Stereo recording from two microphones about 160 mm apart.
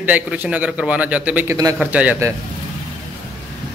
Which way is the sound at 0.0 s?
10° right (ahead or behind).